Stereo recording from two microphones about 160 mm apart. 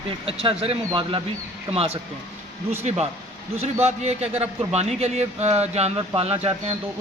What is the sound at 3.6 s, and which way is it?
A man's voice, 40° right (ahead or behind).